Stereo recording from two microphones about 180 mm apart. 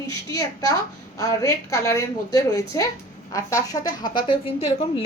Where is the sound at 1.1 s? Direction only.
15° left (ahead or behind).